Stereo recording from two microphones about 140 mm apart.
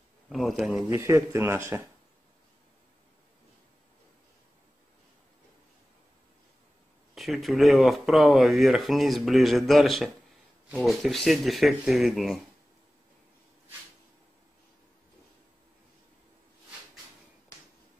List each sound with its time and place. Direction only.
0.3 s speech: centre (ahead or behind)
0.7 s speech: 15° right (ahead or behind)
7.2 s speech: centre (ahead or behind)